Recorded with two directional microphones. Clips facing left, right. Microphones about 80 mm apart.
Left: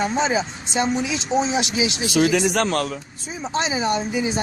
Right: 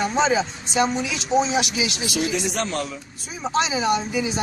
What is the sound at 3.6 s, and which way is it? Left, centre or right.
Speech, left.